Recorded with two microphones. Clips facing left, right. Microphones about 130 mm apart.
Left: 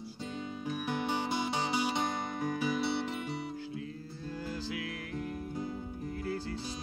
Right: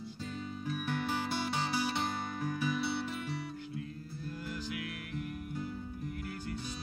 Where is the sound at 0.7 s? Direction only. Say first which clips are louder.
Left 2 dB; 20° left (ahead or behind).